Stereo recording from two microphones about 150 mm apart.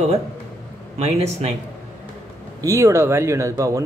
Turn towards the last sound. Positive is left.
turn(degrees=-20)  # may be behind; listen again after turning